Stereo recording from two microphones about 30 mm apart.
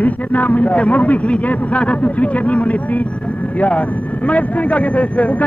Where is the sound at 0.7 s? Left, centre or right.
Left.